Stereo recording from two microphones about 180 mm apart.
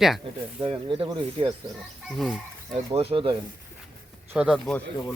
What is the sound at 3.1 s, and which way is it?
Speech, 30° right (ahead or behind).